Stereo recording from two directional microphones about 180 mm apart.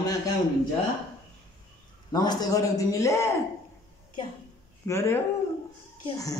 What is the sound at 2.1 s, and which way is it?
A man's voice, 20° left (ahead or behind).